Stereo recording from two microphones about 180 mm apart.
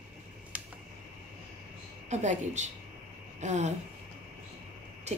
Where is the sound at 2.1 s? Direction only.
40° right (ahead or behind).